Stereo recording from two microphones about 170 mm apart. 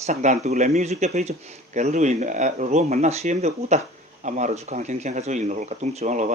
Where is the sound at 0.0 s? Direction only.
45° right (ahead or behind).